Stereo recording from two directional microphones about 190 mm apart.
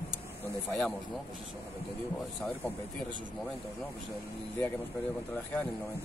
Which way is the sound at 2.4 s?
5° left (ahead or behind).